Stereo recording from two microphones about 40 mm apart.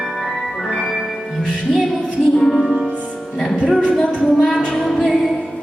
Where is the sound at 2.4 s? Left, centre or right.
Centre.